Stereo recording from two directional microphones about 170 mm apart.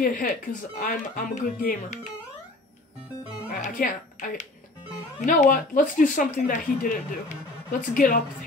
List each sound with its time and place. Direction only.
0.0 s speech: 50° left (ahead or behind)
3.5 s speech: 55° left (ahead or behind)